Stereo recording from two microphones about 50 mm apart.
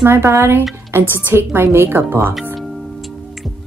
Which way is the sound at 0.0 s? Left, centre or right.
Right.